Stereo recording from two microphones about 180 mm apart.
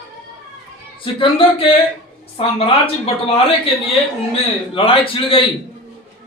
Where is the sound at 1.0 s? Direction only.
30° left (ahead or behind).